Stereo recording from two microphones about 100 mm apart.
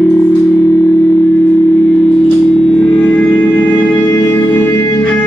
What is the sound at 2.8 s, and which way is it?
Music, 5° left (ahead or behind).